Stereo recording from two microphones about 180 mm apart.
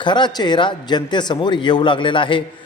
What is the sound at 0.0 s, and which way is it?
A man's voice, 25° left (ahead or behind).